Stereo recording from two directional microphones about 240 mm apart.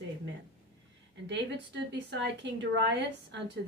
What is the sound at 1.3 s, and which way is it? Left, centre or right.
A woman's voice, right.